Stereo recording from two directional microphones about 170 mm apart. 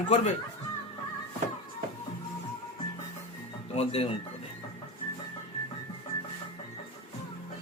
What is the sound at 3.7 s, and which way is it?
Speech, 35° left (ahead or behind).